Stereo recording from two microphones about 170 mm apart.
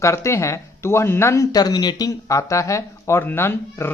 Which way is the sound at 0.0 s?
15° left (ahead or behind).